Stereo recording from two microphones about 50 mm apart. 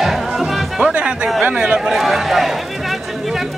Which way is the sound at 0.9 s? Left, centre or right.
Right.